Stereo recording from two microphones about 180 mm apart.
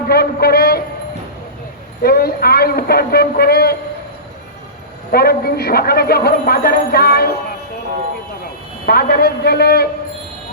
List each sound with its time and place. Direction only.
0.1 s a sound: 60° left (ahead or behind)
2.0 s a man's voice: 60° left (ahead or behind)
5.1 s a man's voice: 60° left (ahead or behind)
8.9 s a man's voice: 60° left (ahead or behind)